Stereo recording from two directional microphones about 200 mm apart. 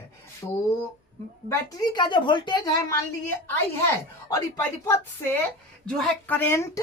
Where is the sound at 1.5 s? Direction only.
20° left (ahead or behind).